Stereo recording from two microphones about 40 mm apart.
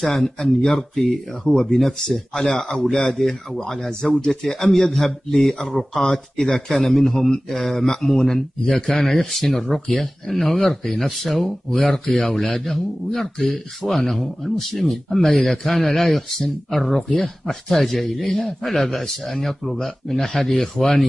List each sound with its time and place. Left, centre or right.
0.0 s speech: centre
1.6 s speech: centre
6.0 s speech: centre